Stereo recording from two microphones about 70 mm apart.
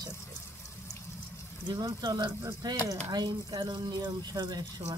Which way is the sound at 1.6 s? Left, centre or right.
Right.